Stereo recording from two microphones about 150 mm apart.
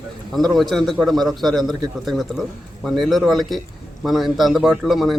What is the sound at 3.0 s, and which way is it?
A man's voice, centre (ahead or behind).